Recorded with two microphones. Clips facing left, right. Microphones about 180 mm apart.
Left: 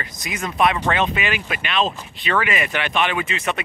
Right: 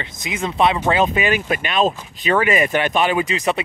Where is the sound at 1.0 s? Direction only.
40° right (ahead or behind).